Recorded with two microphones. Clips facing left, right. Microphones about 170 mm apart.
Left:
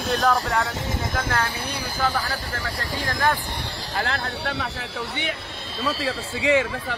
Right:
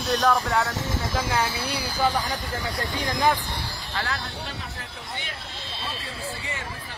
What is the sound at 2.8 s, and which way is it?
Speech, 20° right (ahead or behind).